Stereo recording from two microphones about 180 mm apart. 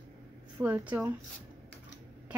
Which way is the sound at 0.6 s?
10° right (ahead or behind).